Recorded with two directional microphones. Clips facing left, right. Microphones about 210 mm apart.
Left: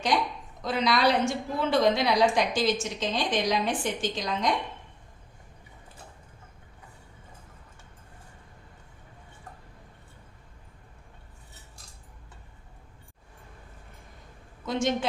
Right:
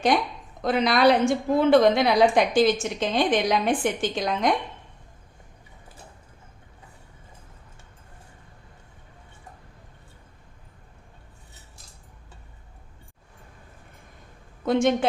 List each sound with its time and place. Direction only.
0.6 s a woman's voice: 55° right (ahead or behind)
14.6 s a woman's voice: 55° right (ahead or behind)